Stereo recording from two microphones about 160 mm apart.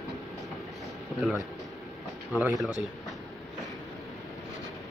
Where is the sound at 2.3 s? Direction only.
5° right (ahead or behind).